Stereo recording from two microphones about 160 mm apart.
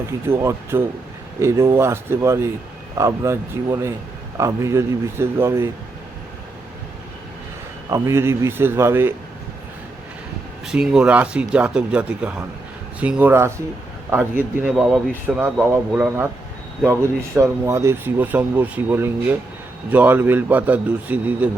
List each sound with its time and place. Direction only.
0.3 s speech: 15° right (ahead or behind)
7.9 s speech: 20° right (ahead or behind)
10.7 s speech: 5° right (ahead or behind)